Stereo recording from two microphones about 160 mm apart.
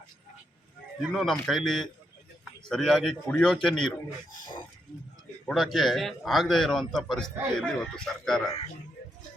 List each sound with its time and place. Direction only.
1.1 s a man's voice: centre (ahead or behind)
5.5 s a man's voice: centre (ahead or behind)